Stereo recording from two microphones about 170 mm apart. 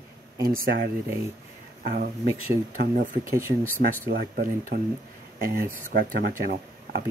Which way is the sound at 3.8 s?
50° right (ahead or behind).